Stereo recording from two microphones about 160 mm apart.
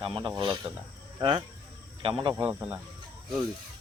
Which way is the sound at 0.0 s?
30° right (ahead or behind).